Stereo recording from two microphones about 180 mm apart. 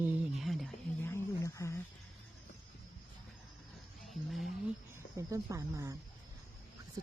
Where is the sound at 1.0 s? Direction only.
15° left (ahead or behind).